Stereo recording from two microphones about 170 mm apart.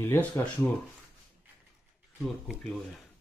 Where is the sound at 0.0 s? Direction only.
15° left (ahead or behind).